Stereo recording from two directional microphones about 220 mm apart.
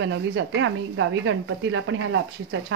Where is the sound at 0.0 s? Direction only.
60° right (ahead or behind).